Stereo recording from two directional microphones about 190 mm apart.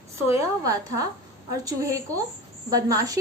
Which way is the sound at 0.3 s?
15° right (ahead or behind).